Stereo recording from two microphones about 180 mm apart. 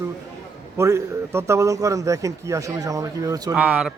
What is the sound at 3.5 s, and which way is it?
Speech, 5° right (ahead or behind).